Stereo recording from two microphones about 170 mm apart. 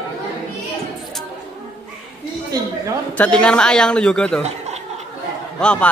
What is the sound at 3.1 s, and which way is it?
Speech, 5° left (ahead or behind).